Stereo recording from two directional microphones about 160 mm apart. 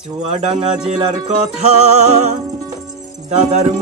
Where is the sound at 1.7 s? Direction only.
45° right (ahead or behind).